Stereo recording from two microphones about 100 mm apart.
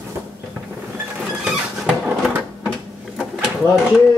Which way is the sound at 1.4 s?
5° right (ahead or behind).